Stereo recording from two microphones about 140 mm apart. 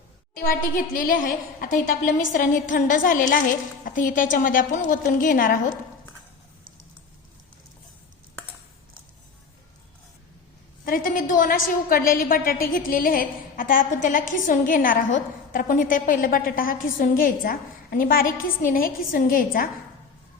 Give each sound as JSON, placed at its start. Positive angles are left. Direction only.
{"t": 0.4, "sound": "a woman's voice", "side_deg": 80}
{"t": 10.8, "sound": "a woman's voice", "side_deg": 85}